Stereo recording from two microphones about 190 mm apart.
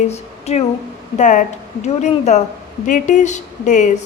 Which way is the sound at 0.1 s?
35° left (ahead or behind).